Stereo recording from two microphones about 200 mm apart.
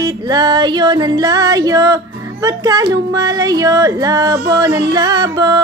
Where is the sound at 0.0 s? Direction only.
20° right (ahead or behind).